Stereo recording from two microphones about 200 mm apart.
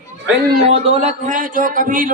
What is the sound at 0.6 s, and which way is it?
A man's voice, 35° right (ahead or behind).